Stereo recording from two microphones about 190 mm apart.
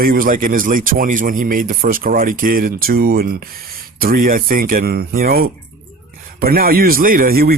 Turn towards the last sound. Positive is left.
turn(degrees=-50)  # may be behind; listen again after turning